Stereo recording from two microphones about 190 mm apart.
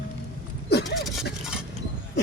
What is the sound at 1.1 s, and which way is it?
Speech, centre (ahead or behind).